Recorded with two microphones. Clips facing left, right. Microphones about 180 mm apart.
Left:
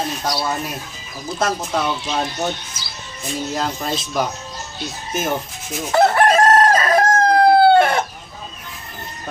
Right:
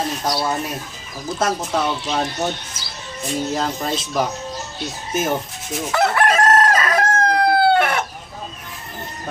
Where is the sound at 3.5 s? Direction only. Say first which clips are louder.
Right 1 dB; 5° right (ahead or behind).